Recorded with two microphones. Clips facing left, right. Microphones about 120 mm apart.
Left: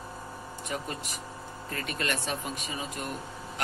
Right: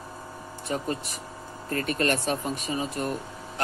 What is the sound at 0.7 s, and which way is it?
Speech, 35° right (ahead or behind).